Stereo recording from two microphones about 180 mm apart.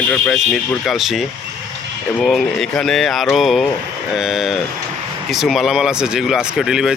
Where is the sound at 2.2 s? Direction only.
Centre (ahead or behind).